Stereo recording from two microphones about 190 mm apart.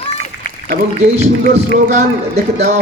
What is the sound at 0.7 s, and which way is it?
Speech, 40° right (ahead or behind).